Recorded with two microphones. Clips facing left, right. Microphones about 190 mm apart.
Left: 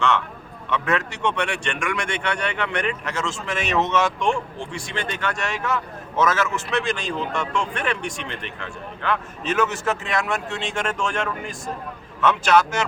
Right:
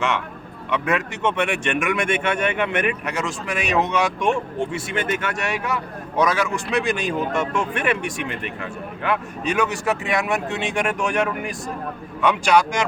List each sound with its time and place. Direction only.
0.7 s a man's voice: 15° right (ahead or behind)